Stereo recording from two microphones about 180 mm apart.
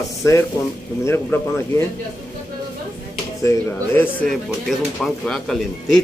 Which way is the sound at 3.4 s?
10° left (ahead or behind).